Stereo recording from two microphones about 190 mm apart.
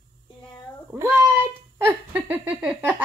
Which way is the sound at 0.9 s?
15° right (ahead or behind).